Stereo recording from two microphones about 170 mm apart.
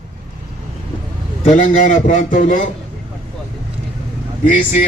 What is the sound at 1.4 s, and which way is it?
Speech, 45° left (ahead or behind).